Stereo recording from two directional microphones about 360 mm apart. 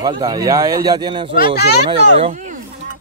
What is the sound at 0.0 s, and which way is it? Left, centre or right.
Speech, centre.